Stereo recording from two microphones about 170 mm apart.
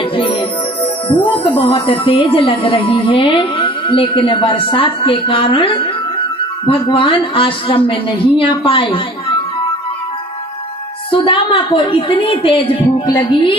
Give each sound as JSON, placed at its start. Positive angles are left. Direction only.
{"t": 0.1, "sound": "music", "side_deg": 30}
{"t": 1.6, "sound": "a woman's voice", "side_deg": 30}
{"t": 11.1, "sound": "a woman's voice", "side_deg": 30}